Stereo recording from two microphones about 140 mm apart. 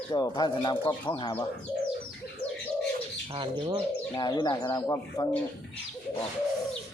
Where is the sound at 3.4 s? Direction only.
35° right (ahead or behind).